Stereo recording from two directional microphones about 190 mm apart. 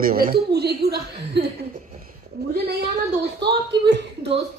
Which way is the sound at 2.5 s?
55° right (ahead or behind).